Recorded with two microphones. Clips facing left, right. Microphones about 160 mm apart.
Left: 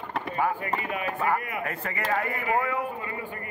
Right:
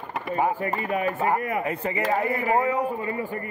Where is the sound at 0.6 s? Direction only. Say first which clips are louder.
Right 4 dB; 40° right (ahead or behind).